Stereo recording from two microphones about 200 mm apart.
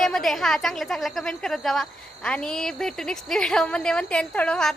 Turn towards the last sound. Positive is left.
turn(degrees=5)  # may be behind; listen again after turning